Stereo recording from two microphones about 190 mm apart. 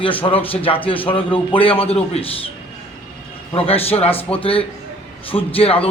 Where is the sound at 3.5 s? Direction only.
30° left (ahead or behind).